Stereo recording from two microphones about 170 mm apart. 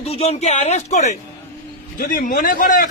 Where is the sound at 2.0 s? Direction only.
55° left (ahead or behind).